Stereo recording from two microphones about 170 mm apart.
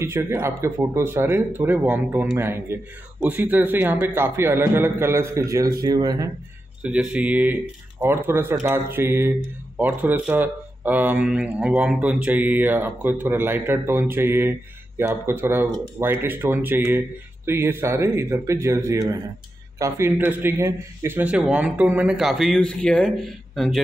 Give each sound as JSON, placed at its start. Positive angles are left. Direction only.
{"t": 0.0, "sound": "speech", "side_deg": -15}
{"t": 6.8, "sound": "speech", "side_deg": -5}